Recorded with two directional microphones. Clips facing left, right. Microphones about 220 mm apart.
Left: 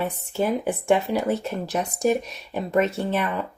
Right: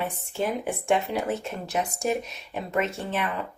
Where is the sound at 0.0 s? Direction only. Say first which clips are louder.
Left 4 dB; 40° left (ahead or behind).